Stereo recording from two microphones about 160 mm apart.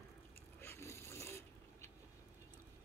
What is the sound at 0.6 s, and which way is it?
Filing, 15° left (ahead or behind).